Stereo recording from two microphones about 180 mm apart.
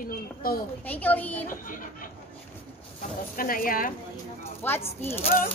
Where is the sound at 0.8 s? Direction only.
10° left (ahead or behind).